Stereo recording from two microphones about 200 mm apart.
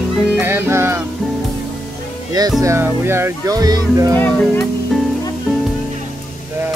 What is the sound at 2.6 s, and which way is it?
Speech, 15° right (ahead or behind).